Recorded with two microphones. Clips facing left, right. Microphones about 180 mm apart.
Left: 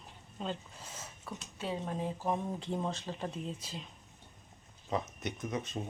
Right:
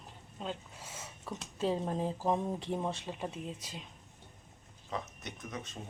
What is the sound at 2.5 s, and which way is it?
Speech, 15° right (ahead or behind).